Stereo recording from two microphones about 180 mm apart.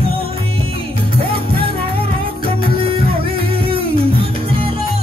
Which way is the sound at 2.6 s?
30° right (ahead or behind).